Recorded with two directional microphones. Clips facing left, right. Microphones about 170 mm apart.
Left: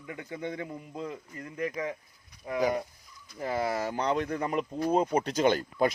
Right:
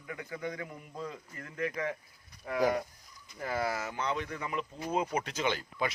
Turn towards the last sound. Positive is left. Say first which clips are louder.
# left 8 dB
turn(degrees=45)  # may be behind; listen again after turning